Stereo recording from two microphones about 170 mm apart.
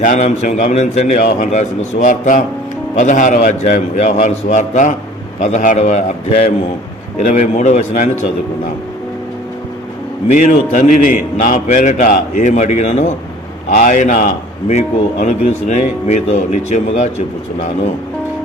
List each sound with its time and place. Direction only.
0.0 s a man's voice: 45° left (ahead or behind)
10.2 s a man's voice: 45° left (ahead or behind)
14.8 s a man's voice: 40° left (ahead or behind)